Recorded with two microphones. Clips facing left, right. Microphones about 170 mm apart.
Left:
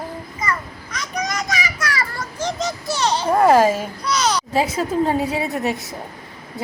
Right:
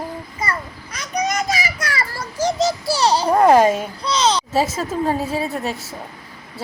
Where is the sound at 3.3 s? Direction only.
5° left (ahead or behind).